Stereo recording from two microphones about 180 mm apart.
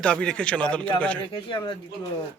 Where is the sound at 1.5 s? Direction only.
25° left (ahead or behind).